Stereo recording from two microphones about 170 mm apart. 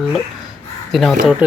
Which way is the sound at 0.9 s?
Centre (ahead or behind).